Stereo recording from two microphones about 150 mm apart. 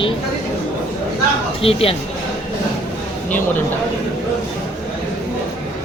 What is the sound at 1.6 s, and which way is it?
Speech, 40° left (ahead or behind).